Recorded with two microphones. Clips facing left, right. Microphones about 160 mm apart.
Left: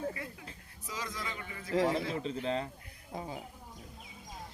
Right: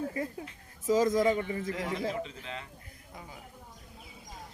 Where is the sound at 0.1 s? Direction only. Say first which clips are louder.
Right 8 dB; 35° right (ahead or behind).